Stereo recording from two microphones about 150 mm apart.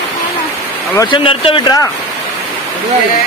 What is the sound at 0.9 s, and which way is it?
Speech, 30° left (ahead or behind).